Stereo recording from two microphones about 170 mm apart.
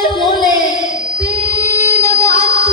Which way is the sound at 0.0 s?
25° left (ahead or behind).